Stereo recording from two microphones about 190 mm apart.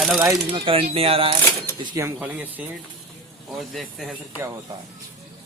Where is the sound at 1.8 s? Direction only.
20° right (ahead or behind).